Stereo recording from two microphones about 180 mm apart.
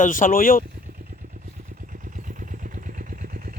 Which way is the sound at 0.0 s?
45° left (ahead or behind).